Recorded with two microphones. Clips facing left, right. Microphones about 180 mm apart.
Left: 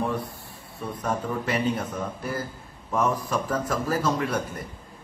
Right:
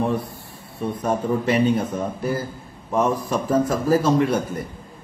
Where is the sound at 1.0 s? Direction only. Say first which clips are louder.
Right 6 dB; 25° right (ahead or behind).